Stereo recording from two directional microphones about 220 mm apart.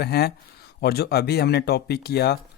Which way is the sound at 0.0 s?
45° left (ahead or behind).